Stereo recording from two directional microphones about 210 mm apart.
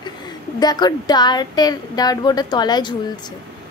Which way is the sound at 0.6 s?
20° left (ahead or behind).